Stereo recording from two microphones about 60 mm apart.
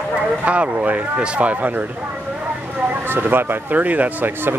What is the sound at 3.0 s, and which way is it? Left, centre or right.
Speech, right.